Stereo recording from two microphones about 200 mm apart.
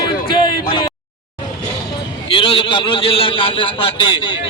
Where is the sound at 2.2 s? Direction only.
25° left (ahead or behind).